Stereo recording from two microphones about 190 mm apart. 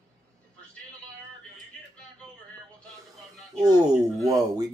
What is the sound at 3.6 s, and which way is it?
Speech, 20° right (ahead or behind).